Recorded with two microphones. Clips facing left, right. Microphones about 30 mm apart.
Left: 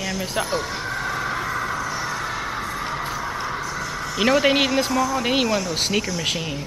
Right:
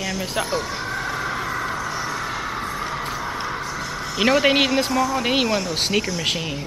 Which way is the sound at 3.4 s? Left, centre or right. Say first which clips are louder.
Even; centre.